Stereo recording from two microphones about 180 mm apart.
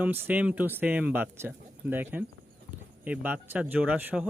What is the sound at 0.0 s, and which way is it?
A man's voice, 10° right (ahead or behind).